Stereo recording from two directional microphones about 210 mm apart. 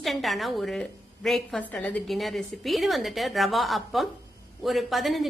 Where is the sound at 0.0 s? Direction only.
Centre (ahead or behind).